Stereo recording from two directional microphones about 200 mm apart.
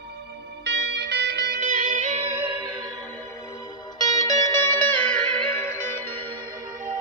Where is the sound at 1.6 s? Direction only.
40° right (ahead or behind).